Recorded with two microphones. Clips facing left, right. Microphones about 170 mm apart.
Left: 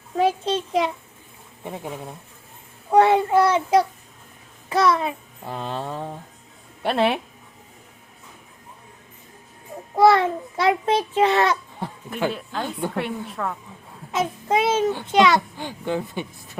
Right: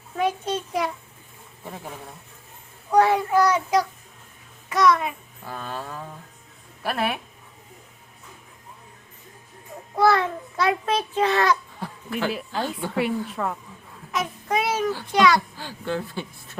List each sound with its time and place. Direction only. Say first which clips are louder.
0.2 s a sound: left 4 dB; 25° left (ahead or behind)
2.9 s child singing: left 3 dB; 25° left (ahead or behind)
6.8 s a woman's voice: left 5 dB; 25° left (ahead or behind)
9.9 s babbling: left 4 dB; 25° left (ahead or behind)
12.3 s a woman's voice: right 1 dB; 5° right (ahead or behind)
14.1 s a sound: left 4 dB; 25° left (ahead or behind)